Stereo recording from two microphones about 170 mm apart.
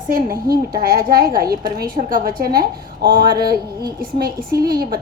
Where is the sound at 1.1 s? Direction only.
60° right (ahead or behind).